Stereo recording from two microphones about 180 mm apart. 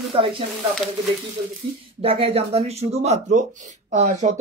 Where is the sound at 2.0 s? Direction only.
30° right (ahead or behind).